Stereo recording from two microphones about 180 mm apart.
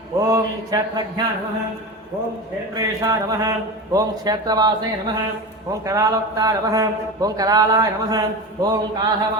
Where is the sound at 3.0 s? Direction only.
20° right (ahead or behind).